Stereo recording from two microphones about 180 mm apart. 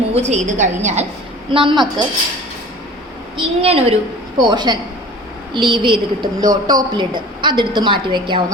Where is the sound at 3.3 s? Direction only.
35° right (ahead or behind).